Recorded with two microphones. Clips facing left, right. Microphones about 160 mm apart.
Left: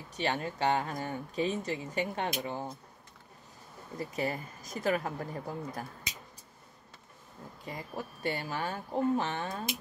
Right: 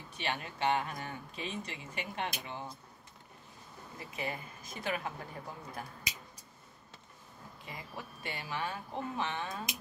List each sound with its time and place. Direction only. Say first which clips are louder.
0.1 s speech: left 6 dB; 40° left (ahead or behind)
4.0 s speech: left 6 dB; 40° left (ahead or behind)
7.6 s speech: left 6 dB; 40° left (ahead or behind)